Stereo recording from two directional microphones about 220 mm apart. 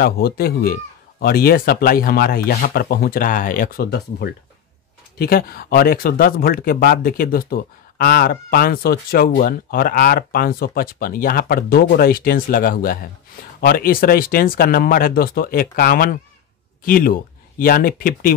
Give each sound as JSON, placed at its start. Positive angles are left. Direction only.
{"t": 0.0, "sound": "speech", "side_deg": 45}